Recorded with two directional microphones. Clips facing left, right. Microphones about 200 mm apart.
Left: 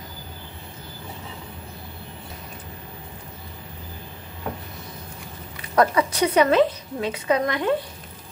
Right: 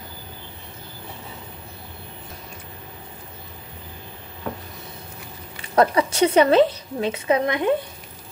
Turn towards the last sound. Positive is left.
turn(degrees=-20)  # may be behind; listen again after turning